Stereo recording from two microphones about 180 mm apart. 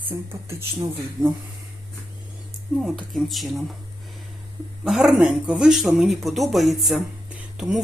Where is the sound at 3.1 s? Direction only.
Centre (ahead or behind).